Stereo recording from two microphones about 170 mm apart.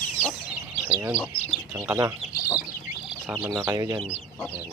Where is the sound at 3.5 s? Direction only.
20° right (ahead or behind).